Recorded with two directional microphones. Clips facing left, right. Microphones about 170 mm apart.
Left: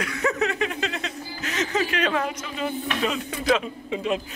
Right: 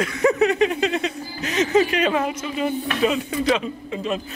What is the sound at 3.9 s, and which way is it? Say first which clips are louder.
Speech: left 2 dB; 15° left (ahead or behind).